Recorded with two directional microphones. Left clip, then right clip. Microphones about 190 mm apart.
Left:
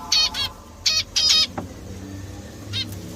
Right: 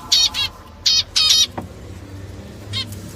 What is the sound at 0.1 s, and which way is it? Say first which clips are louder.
Bird: right 4 dB; 10° left (ahead or behind).